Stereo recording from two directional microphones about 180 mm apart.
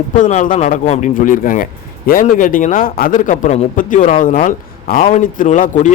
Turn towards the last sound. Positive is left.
turn(degrees=45)  # may be behind; listen again after turning